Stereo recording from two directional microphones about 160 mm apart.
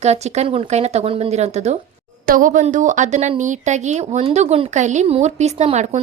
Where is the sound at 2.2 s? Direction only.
60° right (ahead or behind); by 6.0 s 45° right (ahead or behind).